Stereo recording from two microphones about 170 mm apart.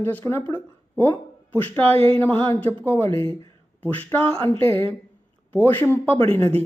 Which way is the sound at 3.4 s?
15° left (ahead or behind).